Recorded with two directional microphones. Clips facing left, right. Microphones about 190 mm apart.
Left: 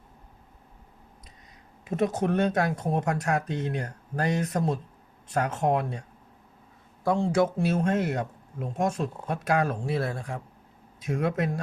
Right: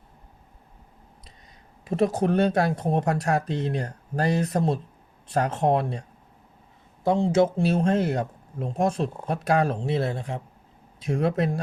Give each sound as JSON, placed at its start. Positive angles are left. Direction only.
{"t": 1.8, "sound": "speech", "side_deg": -35}
{"t": 7.0, "sound": "speech", "side_deg": -20}